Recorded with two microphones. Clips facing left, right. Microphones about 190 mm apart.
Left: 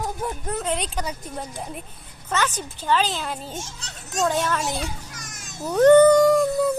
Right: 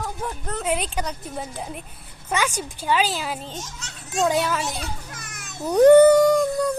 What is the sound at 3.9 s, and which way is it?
Children playing, 45° left (ahead or behind).